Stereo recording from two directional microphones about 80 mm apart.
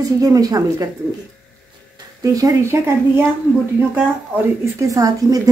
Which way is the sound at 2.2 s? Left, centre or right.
Right.